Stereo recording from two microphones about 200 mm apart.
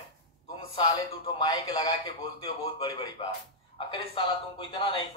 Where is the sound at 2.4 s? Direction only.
30° left (ahead or behind).